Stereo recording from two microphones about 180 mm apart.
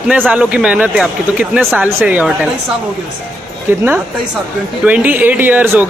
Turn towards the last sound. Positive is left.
turn(degrees=-10)  # may be behind; listen again after turning